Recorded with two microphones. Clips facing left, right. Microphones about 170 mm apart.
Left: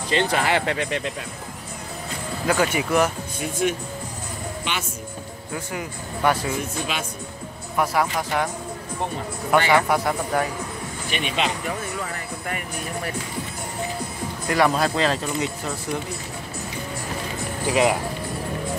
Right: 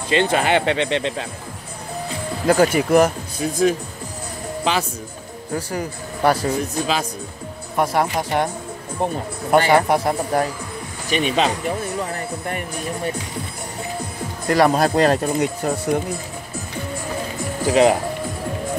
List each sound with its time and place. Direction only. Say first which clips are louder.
0.1 s speech: right 4 dB; 20° right (ahead or behind)
2.4 s speech: right 6 dB; 40° right (ahead or behind)
5.5 s speech: right 6 dB; 40° right (ahead or behind)
9.5 s speech: right 4 dB; 40° right (ahead or behind)
14.5 s speech: right 4 dB; 40° right (ahead or behind)
17.6 s speech: right 5 dB; 35° right (ahead or behind)